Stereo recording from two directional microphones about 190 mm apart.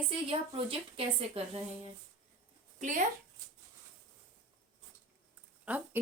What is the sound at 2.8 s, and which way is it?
Speech, 40° right (ahead or behind).